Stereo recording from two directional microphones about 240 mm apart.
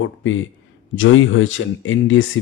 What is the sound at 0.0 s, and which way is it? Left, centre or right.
Speech, left.